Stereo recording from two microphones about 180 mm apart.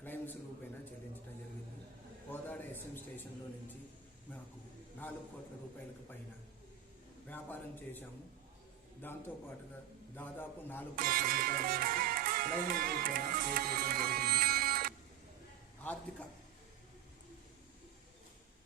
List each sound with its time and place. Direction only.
0.0 s a sound: 10° left (ahead or behind)
2.3 s a man's voice: 10° left (ahead or behind)
7.3 s a man's voice: 10° left (ahead or behind)
9.0 s a man's voice: 10° left (ahead or behind)
10.9 s music: 50° right (ahead or behind)
15.8 s music: 10° left (ahead or behind)